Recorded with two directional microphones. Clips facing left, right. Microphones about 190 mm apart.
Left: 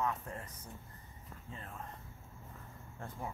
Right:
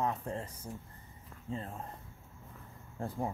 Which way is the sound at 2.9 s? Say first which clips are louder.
Right 8 dB; 35° right (ahead or behind).